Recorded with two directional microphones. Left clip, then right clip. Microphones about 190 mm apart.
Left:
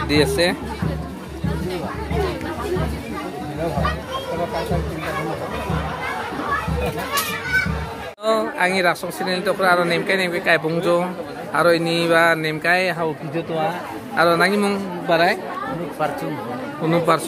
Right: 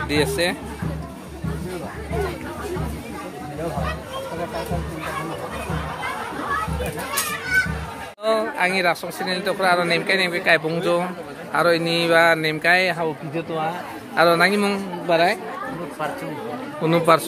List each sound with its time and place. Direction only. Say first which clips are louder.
0.1 s speech: left 4 dB; 5° left (ahead or behind)
8.3 s speech: left 1 dB; 10° right (ahead or behind)
14.1 s speech: even; 25° right (ahead or behind)
16.8 s speech: right 1 dB; 30° right (ahead or behind)